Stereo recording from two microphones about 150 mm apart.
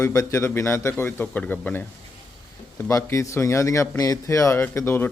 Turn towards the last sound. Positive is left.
turn(degrees=15)  # may be behind; listen again after turning